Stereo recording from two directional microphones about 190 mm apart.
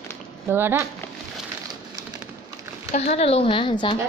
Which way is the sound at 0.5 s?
10° right (ahead or behind).